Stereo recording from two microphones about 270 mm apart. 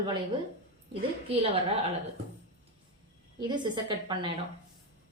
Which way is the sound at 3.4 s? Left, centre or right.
Centre.